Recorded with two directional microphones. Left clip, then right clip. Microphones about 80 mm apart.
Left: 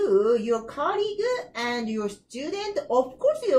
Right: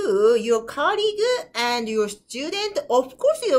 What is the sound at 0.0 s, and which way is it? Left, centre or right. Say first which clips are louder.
A woman's voice: right 3 dB; centre.